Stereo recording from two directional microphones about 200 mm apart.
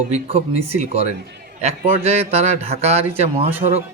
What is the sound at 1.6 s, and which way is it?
A man's voice, 35° right (ahead or behind).